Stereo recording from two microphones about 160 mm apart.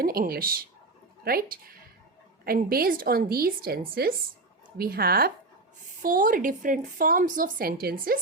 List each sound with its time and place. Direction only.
0.0 s a woman's voice: 70° right (ahead or behind)
6.0 s speech: 60° right (ahead or behind)